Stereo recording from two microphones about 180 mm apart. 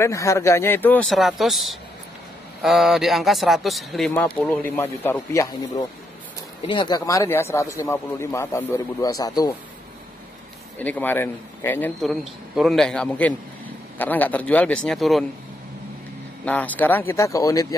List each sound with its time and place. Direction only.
0.0 s a man's voice: 15° left (ahead or behind)
6.7 s speech: 25° left (ahead or behind)
10.8 s speech: 10° left (ahead or behind)
12.0 s a man's voice: centre (ahead or behind)
16.4 s speech: 10° left (ahead or behind)